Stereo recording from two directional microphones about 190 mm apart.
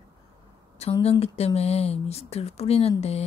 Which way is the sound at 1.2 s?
35° left (ahead or behind).